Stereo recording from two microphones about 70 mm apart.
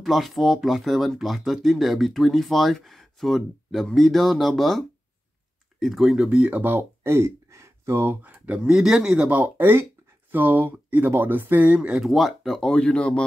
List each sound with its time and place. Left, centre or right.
0.0 s speech: centre
6.2 s speech: centre
8.5 s speech: centre
9.3 s speech: right
12.0 s speech: centre
12.5 s speech: centre